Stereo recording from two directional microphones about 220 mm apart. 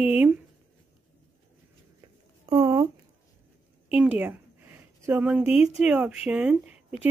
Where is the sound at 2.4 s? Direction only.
15° right (ahead or behind).